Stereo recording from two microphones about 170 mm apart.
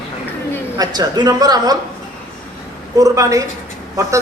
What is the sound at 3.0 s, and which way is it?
Speech, 20° right (ahead or behind).